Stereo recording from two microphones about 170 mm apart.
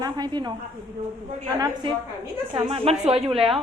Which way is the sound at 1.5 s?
25° right (ahead or behind).